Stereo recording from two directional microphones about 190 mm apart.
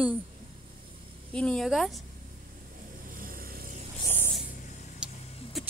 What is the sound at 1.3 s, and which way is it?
Speech, 5° left (ahead or behind).